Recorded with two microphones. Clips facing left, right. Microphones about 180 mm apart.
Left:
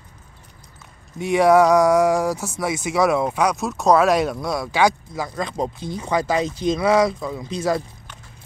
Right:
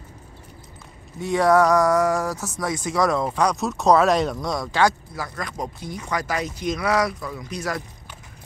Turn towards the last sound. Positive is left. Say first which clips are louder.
# left 6 dB
turn(degrees=25)  # may be behind; listen again after turning